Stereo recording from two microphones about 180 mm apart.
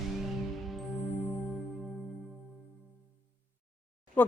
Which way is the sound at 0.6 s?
Centre (ahead or behind).